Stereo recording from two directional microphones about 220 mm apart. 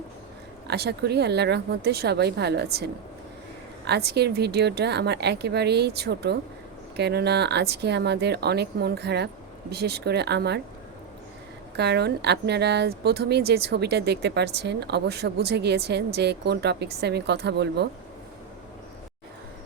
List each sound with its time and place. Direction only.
0.7 s a woman's voice: 50° right (ahead or behind)
11.8 s a woman's voice: 50° right (ahead or behind)